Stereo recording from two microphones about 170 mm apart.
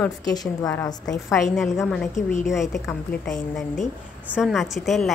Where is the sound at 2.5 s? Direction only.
Centre (ahead or behind).